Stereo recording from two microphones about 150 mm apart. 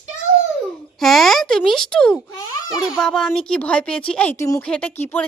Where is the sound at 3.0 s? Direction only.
5° left (ahead or behind).